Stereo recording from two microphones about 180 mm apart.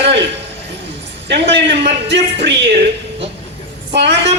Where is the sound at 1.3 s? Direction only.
70° right (ahead or behind).